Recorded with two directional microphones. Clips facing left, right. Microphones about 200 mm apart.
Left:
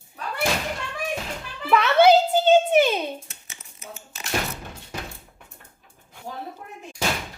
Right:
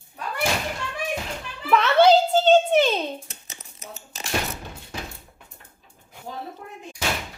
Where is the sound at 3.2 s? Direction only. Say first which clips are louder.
Right 3 dB; 40° right (ahead or behind).